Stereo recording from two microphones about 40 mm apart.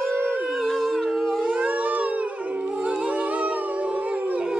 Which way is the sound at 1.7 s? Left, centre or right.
Right.